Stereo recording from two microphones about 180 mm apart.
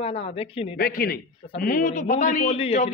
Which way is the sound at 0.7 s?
55° left (ahead or behind).